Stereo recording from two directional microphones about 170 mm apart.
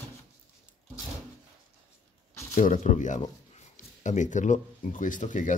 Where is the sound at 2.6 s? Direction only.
45° left (ahead or behind).